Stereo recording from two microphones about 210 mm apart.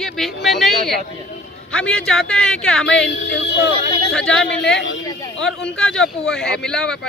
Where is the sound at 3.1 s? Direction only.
60° left (ahead or behind).